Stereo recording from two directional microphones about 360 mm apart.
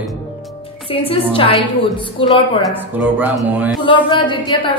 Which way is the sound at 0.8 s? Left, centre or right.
Centre.